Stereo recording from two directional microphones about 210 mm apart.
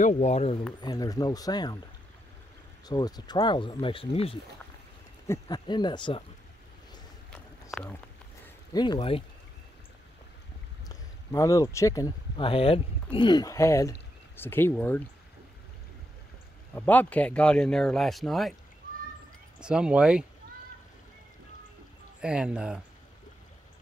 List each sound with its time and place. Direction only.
0.0 s speech: 35° left (ahead or behind)
2.9 s speech: 20° left (ahead or behind)
5.2 s speech: 15° left (ahead or behind)
7.7 s speech: centre (ahead or behind)
8.7 s speech: 20° left (ahead or behind)
10.9 s speech: 15° left (ahead or behind)
16.7 s speech: 10° left (ahead or behind)
19.6 s speech: 5° right (ahead or behind)
22.2 s speech: 5° right (ahead or behind)